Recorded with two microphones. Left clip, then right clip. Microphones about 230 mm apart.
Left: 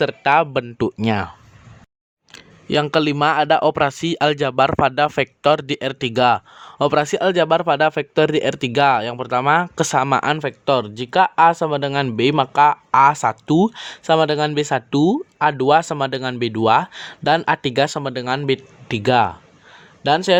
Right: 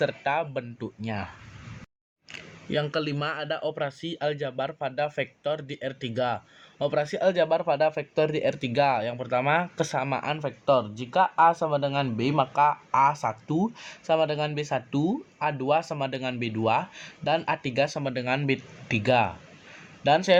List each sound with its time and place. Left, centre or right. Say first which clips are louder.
0.0 s speech: left 11 dB; left
2.3 s speech: left 9 dB; left